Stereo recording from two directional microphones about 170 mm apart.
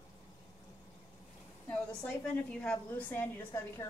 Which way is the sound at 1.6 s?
5° left (ahead or behind).